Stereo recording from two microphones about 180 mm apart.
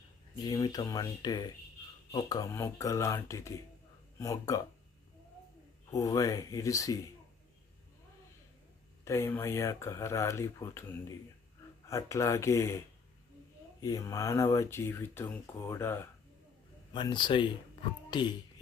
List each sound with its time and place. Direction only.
0.3 s speech: 20° left (ahead or behind)
5.9 s speech: 20° left (ahead or behind)
9.0 s speech: 15° left (ahead or behind)
13.8 s speech: 20° left (ahead or behind)
16.9 s speech: 25° left (ahead or behind)